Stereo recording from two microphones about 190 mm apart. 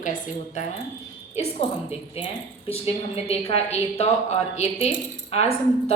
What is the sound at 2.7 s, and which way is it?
A woman's voice, 35° left (ahead or behind).